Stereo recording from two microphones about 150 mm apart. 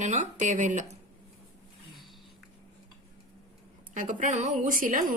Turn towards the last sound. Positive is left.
turn(degrees=-65)  # may be behind; listen again after turning